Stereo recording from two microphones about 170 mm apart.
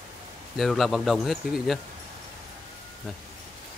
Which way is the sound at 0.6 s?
Centre (ahead or behind).